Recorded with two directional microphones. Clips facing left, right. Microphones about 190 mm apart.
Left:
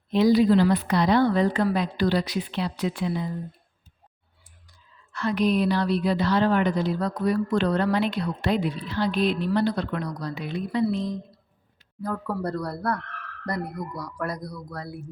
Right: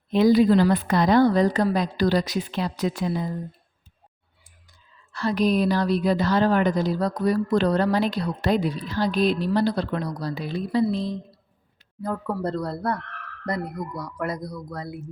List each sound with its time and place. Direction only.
0.1 s a woman's voice: 50° right (ahead or behind)
5.1 s a woman's voice: 35° right (ahead or behind); by 15.0 s 20° right (ahead or behind)